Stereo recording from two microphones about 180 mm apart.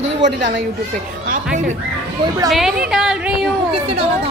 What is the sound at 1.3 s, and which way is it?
Speech, 45° right (ahead or behind).